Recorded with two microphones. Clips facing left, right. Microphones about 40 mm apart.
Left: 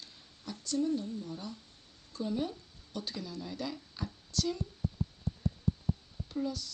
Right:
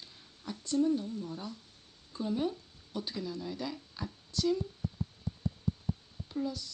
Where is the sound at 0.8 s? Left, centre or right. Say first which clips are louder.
Right 3 dB; right.